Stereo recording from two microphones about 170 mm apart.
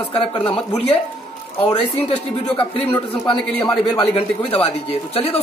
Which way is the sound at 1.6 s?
35° left (ahead or behind).